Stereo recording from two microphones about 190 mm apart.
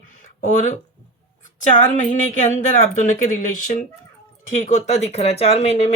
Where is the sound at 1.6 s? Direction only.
40° left (ahead or behind).